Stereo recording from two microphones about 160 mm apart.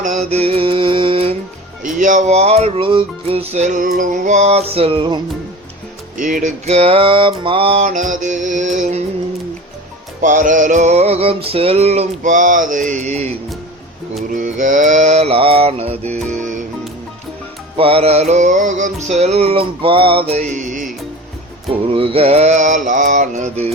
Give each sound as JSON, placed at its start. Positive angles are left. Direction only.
{"t": 0.0, "sound": "mantra", "side_deg": -45}
{"t": 1.8, "sound": "music", "side_deg": -55}
{"t": 6.1, "sound": "music", "side_deg": -55}
{"t": 10.2, "sound": "music", "side_deg": -55}
{"t": 17.7, "sound": "music", "side_deg": -35}
{"t": 21.7, "sound": "music", "side_deg": -35}